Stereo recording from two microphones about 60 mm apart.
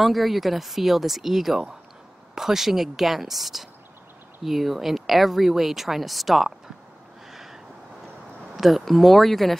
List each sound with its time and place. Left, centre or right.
0.0 s speech: centre
7.2 s a sound: centre
8.5 s speech: centre